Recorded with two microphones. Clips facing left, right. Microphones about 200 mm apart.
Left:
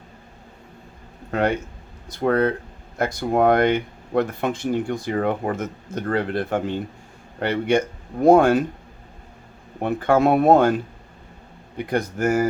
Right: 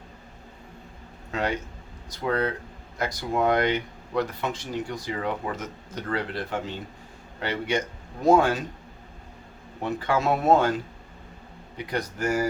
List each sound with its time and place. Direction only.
1.3 s speech: 55° left (ahead or behind)
9.8 s speech: 55° left (ahead or behind)
11.9 s speech: 50° left (ahead or behind)